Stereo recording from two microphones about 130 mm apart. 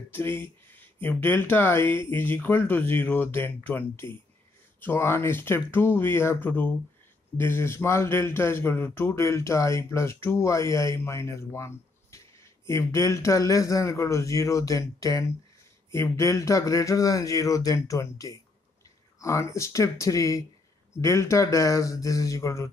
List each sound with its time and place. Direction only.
0.1 s a man's voice: 20° left (ahead or behind)